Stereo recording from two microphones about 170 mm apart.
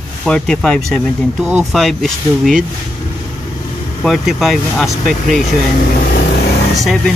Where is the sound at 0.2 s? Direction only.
5° left (ahead or behind).